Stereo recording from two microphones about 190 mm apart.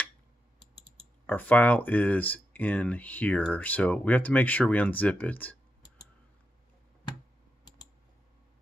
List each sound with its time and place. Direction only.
0.6 s typing: 65° left (ahead or behind)
1.2 s speech: 10° left (ahead or behind)